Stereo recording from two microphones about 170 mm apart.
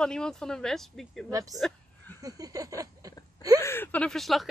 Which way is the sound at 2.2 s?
20° right (ahead or behind).